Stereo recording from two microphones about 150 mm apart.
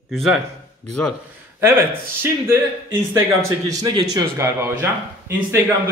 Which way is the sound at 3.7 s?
25° right (ahead or behind).